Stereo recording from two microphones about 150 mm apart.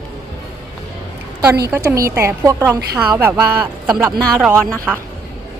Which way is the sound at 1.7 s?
20° right (ahead or behind).